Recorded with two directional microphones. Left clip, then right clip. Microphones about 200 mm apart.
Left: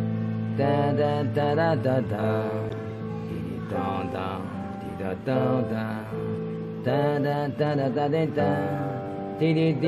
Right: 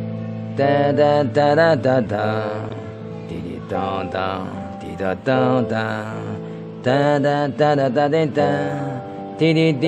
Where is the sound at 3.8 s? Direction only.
50° right (ahead or behind).